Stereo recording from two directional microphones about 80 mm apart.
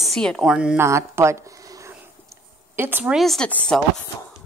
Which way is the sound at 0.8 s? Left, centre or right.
Right.